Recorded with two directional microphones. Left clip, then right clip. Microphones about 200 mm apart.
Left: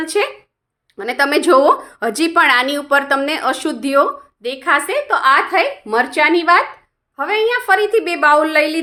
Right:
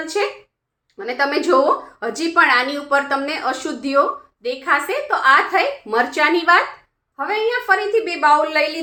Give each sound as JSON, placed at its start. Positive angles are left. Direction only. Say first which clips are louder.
{"t": 0.0, "sound": "a woman's voice", "louder": "left 3 dB", "side_deg": 40}
{"t": 7.2, "sound": "a woman's voice", "louder": "left 4 dB", "side_deg": 40}